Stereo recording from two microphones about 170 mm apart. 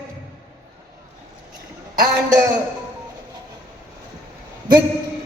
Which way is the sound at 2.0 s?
20° right (ahead or behind).